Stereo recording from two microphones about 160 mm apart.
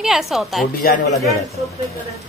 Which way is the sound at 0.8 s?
65° left (ahead or behind).